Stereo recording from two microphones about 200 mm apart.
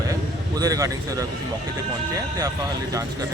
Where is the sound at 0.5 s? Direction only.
15° right (ahead or behind).